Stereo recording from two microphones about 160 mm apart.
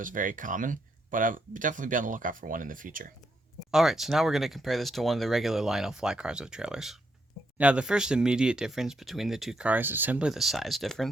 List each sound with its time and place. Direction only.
0.0 s speech: 55° right (ahead or behind)
3.7 s speech: 5° right (ahead or behind)